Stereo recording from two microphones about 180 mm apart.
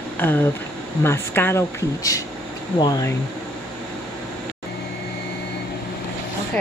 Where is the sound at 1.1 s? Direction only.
15° left (ahead or behind).